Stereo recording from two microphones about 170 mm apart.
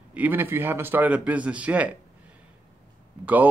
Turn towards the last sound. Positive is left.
turn(degrees=-10)  # may be behind; listen again after turning